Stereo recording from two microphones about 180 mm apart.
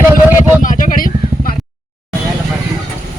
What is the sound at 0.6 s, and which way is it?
Vehicle, 45° left (ahead or behind).